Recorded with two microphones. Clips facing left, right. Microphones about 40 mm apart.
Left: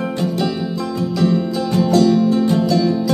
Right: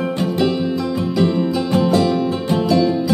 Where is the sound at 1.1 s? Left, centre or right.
Centre.